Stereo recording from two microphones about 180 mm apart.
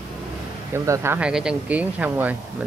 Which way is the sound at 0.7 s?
15° right (ahead or behind).